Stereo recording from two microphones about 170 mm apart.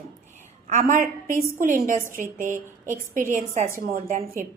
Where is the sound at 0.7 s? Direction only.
50° right (ahead or behind).